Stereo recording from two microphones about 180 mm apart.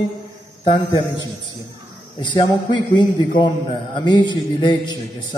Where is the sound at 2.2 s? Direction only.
25° left (ahead or behind).